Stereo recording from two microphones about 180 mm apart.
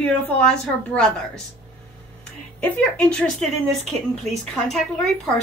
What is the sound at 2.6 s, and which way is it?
A woman's voice, 5° left (ahead or behind).